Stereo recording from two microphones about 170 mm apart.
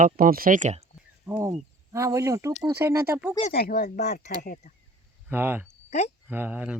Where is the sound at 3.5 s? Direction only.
65° left (ahead or behind).